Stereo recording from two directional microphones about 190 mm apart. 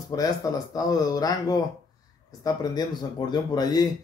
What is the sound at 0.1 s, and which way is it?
Speech, 20° left (ahead or behind).